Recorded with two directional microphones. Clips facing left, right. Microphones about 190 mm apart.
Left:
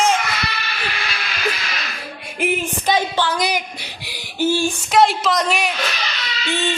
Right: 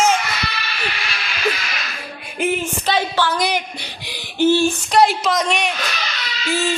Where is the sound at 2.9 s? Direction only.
15° left (ahead or behind).